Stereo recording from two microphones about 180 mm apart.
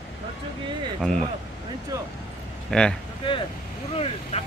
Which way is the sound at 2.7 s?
5° left (ahead or behind).